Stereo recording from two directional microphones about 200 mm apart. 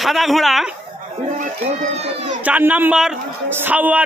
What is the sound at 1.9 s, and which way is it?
Speech, 35° right (ahead or behind).